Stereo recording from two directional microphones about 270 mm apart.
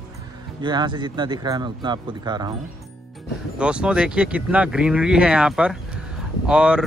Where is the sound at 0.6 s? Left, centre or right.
Centre.